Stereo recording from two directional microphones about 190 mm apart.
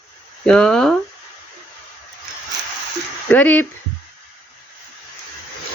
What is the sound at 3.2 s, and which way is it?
Speech, 10° left (ahead or behind).